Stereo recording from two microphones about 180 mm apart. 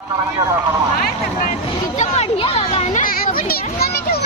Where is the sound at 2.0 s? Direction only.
35° left (ahead or behind); by 4.2 s 60° left (ahead or behind).